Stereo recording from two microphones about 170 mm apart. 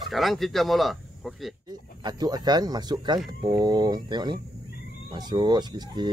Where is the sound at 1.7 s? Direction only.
25° right (ahead or behind).